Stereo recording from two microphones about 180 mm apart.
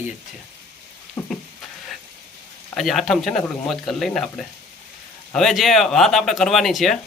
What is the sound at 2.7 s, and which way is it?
Speech, centre (ahead or behind).